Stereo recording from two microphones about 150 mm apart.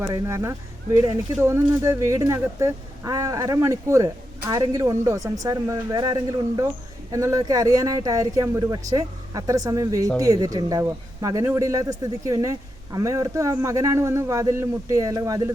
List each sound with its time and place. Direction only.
0.0 s speech: 20° right (ahead or behind)